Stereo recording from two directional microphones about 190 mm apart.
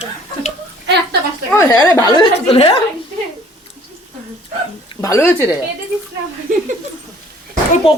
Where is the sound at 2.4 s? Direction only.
30° left (ahead or behind).